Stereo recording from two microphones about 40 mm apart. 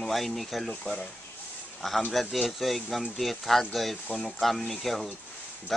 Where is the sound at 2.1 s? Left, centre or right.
Centre.